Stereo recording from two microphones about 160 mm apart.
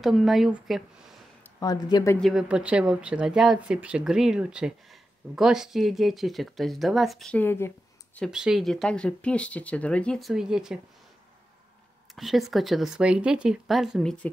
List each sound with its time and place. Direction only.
0.0 s speech: centre (ahead or behind)
1.6 s speech: 25° left (ahead or behind)
2.1 s speech: centre (ahead or behind)
8.3 s speech: 5° right (ahead or behind)
12.2 s speech: centre (ahead or behind)